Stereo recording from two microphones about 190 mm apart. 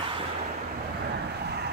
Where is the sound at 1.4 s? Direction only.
55° right (ahead or behind).